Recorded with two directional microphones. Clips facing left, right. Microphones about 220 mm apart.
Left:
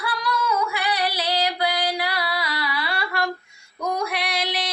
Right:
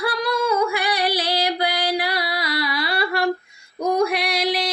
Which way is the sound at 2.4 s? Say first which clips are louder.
Right 4 dB; 40° right (ahead or behind).